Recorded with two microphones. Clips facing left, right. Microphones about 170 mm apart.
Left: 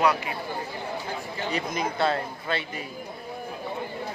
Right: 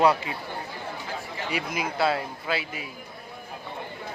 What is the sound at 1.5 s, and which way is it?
Speech, 10° right (ahead or behind).